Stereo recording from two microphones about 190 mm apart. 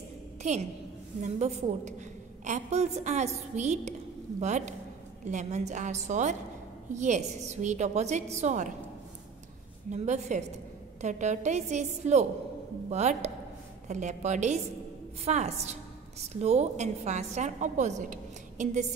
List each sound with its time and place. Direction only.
0.4 s a woman's voice: 35° right (ahead or behind)
9.8 s a woman's voice: 35° right (ahead or behind)